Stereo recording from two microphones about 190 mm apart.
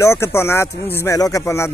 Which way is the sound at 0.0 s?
15° left (ahead or behind).